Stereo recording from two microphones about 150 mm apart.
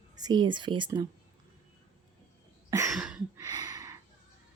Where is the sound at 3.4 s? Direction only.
25° right (ahead or behind).